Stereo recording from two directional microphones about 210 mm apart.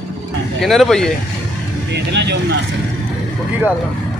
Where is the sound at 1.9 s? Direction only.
55° right (ahead or behind).